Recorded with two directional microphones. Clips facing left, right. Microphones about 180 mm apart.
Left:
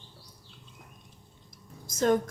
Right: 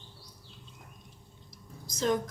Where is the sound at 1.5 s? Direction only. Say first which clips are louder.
Even; 50° left (ahead or behind).